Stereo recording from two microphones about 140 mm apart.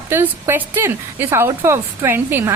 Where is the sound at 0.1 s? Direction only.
15° right (ahead or behind).